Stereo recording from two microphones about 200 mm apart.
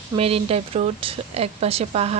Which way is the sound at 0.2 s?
30° right (ahead or behind).